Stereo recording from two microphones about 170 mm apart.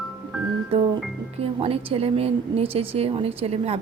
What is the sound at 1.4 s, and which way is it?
A woman's voice, 35° right (ahead or behind).